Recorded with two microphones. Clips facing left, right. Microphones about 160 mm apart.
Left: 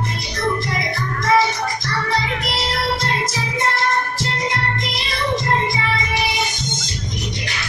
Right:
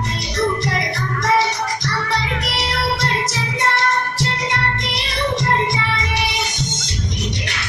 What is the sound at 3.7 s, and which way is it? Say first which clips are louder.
Music: right 1 dB; 75° right (ahead or behind).